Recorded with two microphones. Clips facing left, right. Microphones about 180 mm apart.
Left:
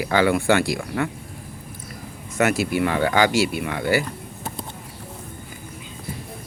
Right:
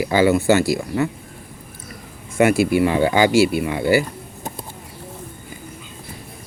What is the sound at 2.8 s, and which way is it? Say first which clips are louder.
Speech: even; 15° right (ahead or behind).